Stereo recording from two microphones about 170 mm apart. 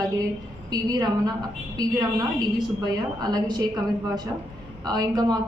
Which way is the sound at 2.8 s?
25° right (ahead or behind).